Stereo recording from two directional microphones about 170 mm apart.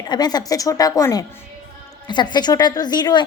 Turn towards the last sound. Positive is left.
turn(degrees=25)  # may be behind; listen again after turning